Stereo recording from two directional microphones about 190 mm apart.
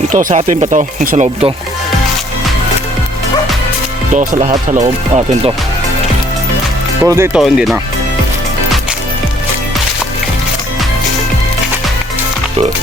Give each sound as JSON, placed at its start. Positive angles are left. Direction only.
{"t": 0.1, "sound": "speech", "side_deg": -40}
{"t": 4.1, "sound": "music", "side_deg": -40}
{"t": 4.7, "sound": "speech", "side_deg": -40}
{"t": 7.0, "sound": "speech", "side_deg": -10}
{"t": 7.4, "sound": "speech", "side_deg": 0}